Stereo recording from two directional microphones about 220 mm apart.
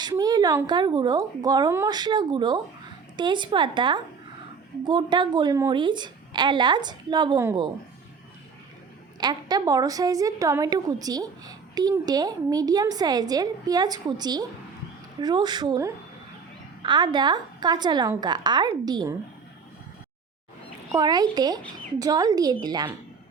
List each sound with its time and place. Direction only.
0.0 s a woman's voice: 15° right (ahead or behind)
9.2 s a woman's voice: 20° right (ahead or behind)
20.9 s a woman's voice: 15° right (ahead or behind)